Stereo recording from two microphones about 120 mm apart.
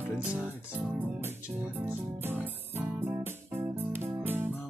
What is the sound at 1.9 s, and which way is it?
Music, 15° right (ahead or behind).